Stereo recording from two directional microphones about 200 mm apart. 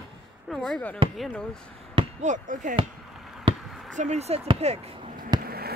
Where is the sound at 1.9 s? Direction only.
35° right (ahead or behind).